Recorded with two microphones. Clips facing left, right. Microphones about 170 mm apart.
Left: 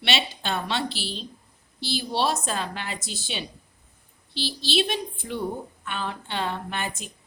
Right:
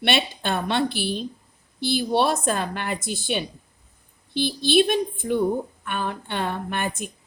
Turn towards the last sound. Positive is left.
turn(degrees=-55)  # may be behind; listen again after turning